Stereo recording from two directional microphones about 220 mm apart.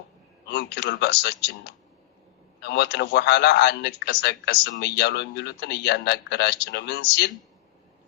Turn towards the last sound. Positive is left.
turn(degrees=50)  # may be behind; listen again after turning